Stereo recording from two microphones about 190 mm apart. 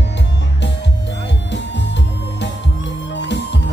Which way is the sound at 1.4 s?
65° left (ahead or behind).